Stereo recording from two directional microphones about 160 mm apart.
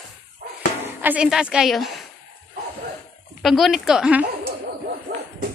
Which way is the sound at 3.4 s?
Centre (ahead or behind).